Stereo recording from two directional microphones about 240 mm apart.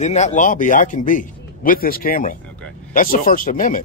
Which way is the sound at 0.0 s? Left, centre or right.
Left.